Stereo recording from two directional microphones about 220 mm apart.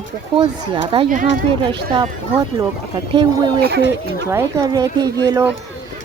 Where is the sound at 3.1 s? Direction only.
20° right (ahead or behind).